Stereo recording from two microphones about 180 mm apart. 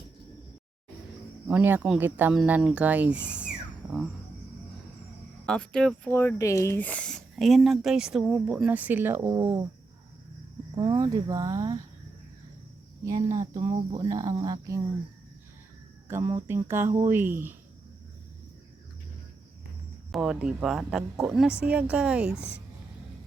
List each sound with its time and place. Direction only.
1.5 s speech: 10° right (ahead or behind)
5.5 s speech: 5° left (ahead or behind); by 9.6 s 20° right (ahead or behind)
10.8 s speech: 20° right (ahead or behind)
13.1 s speech: 20° right (ahead or behind)
16.0 s speech: 15° right (ahead or behind)
20.1 s speech: 5° right (ahead or behind)